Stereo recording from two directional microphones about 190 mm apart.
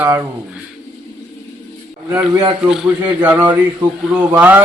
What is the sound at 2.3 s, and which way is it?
Speech, 25° right (ahead or behind).